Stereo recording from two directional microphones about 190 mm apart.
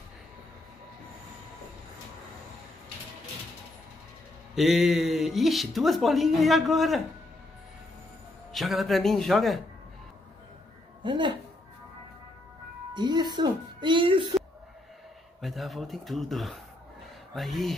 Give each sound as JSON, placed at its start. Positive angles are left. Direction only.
{"t": 4.6, "sound": "speech", "side_deg": 0}
{"t": 8.5, "sound": "speech", "side_deg": 0}
{"t": 11.0, "sound": "speech", "side_deg": -25}
{"t": 12.9, "sound": "music", "side_deg": -25}
{"t": 15.4, "sound": "speech", "side_deg": 0}